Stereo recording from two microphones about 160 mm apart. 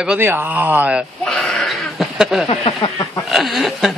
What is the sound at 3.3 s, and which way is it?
Speech, centre (ahead or behind).